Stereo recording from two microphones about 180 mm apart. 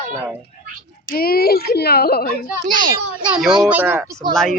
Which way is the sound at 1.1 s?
55° left (ahead or behind).